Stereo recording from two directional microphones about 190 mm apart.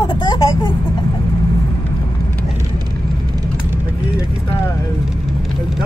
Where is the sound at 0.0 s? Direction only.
25° left (ahead or behind).